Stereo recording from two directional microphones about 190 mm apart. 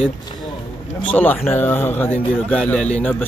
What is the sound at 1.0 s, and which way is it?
Speech, 10° left (ahead or behind).